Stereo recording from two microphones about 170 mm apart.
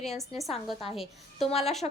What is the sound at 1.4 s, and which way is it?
Speech, 35° left (ahead or behind).